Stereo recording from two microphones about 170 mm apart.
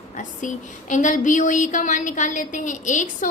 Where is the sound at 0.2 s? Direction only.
45° left (ahead or behind).